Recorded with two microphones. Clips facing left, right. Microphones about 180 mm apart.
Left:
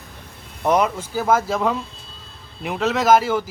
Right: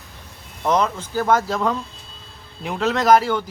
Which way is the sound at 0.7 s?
10° left (ahead or behind).